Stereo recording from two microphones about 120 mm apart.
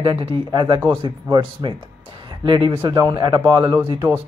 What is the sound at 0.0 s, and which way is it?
Speech, 45° right (ahead or behind).